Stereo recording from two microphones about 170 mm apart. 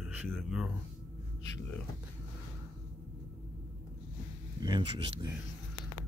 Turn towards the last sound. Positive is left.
turn(degrees=-30)  # may be behind; listen again after turning